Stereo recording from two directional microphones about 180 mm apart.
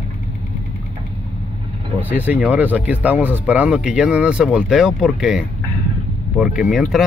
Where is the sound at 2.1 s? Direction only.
10° right (ahead or behind).